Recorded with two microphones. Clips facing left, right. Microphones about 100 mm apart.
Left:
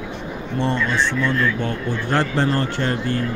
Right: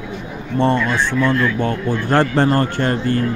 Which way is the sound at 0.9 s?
10° right (ahead or behind).